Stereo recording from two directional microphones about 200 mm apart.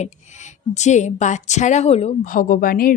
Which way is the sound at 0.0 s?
35° left (ahead or behind).